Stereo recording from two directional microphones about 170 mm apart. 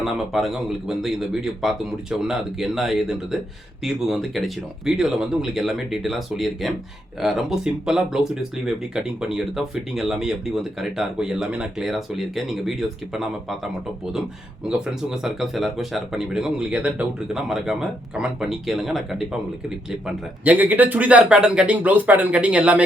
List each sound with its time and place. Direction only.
0.0 s speech: centre (ahead or behind)
14.7 s speech: 5° right (ahead or behind)